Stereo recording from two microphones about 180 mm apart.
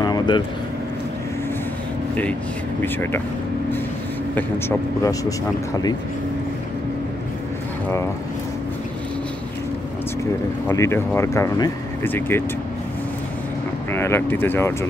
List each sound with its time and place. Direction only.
0.0 s vehicle: 20° left (ahead or behind)
2.8 s speech: 10° left (ahead or behind)
4.4 s speech: 15° left (ahead or behind)
10.7 s speech: 15° left (ahead or behind)
13.9 s speech: 15° left (ahead or behind)